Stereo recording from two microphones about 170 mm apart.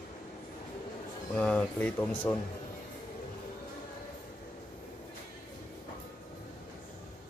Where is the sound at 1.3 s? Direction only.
10° left (ahead or behind).